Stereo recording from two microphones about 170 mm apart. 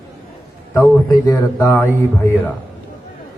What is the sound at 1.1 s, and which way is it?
Speech, 20° left (ahead or behind).